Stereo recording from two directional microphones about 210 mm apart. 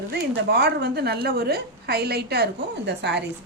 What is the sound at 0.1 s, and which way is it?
A woman's voice, 50° right (ahead or behind).